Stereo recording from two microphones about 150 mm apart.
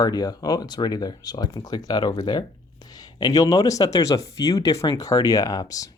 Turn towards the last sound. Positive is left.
turn(degrees=25)  # may be behind; listen again after turning